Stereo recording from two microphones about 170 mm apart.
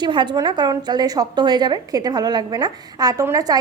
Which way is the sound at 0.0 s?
25° right (ahead or behind).